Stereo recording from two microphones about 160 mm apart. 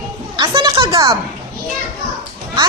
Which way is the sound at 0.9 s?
20° right (ahead or behind).